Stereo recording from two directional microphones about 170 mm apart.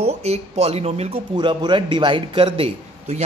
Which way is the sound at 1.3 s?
25° right (ahead or behind).